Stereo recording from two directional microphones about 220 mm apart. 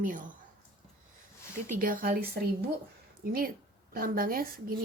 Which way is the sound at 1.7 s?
40° right (ahead or behind).